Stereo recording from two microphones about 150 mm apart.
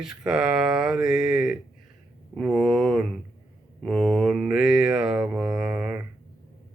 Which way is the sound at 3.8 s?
Centre (ahead or behind).